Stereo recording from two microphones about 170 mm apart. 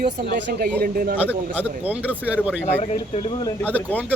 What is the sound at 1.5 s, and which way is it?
Speech, 10° right (ahead or behind).